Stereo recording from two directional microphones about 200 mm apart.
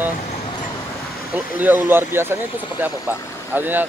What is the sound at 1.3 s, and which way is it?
Speech, 10° right (ahead or behind).